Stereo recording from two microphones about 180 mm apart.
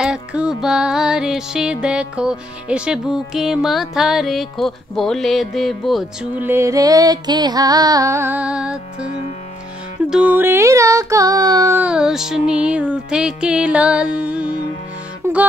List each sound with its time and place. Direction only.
0.0 s music: 5° right (ahead or behind)
6.4 s music: 15° right (ahead or behind)
10.0 s a sound: 5° right (ahead or behind)